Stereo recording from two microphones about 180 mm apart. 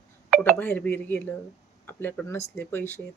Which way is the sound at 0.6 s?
10° left (ahead or behind).